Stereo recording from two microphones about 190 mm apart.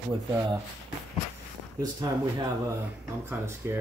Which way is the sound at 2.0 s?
20° right (ahead or behind).